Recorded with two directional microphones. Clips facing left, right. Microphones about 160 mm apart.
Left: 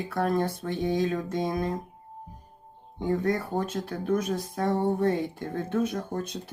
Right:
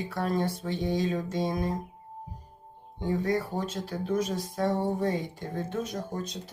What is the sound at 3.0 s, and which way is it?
Speech, 55° left (ahead or behind).